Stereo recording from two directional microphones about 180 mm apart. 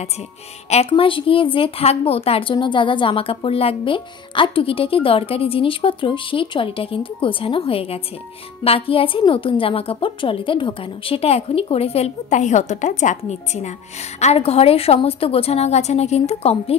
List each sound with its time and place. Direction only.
0.7 s a woman's voice: 35° left (ahead or behind)